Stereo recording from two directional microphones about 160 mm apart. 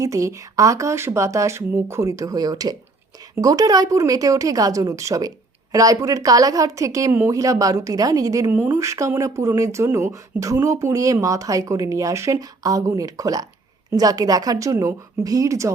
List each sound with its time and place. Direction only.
0.0 s a woman's voice: 20° right (ahead or behind)